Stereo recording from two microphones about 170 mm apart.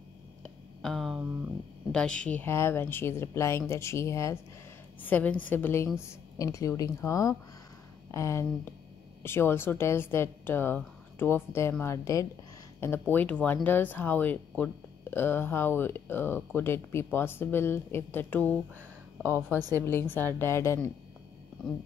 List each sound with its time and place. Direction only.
0.4 s a sound: centre (ahead or behind)
1.9 s speech: 5° left (ahead or behind)
19.8 s speech: 15° left (ahead or behind)